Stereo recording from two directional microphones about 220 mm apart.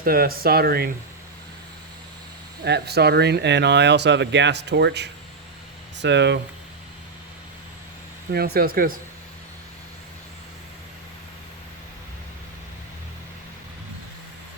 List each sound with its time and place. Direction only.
0.0 s speech: 40° right (ahead or behind)
2.6 s speech: 50° right (ahead or behind)
8.3 s speech: 45° right (ahead or behind)